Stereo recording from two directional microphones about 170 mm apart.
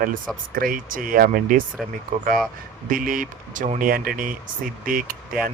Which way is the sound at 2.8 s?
55° right (ahead or behind).